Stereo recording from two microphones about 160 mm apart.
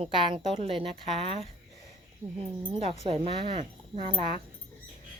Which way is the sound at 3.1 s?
30° right (ahead or behind).